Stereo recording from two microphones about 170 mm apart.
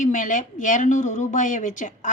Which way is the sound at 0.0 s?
50° left (ahead or behind).